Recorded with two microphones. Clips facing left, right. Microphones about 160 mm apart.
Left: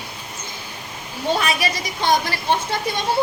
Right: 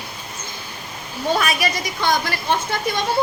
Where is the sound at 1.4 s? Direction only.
30° left (ahead or behind).